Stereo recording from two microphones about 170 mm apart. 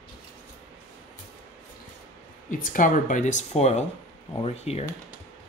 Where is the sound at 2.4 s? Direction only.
50° left (ahead or behind).